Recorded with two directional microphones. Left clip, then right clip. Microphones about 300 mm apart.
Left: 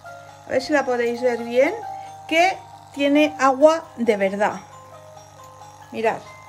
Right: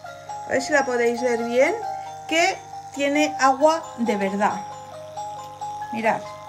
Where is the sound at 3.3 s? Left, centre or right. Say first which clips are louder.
Even; left.